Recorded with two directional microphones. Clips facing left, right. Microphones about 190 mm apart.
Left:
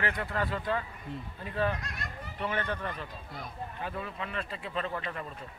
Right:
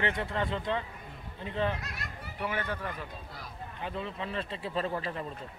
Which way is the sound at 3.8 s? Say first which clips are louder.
Right 2 dB; 25° right (ahead or behind).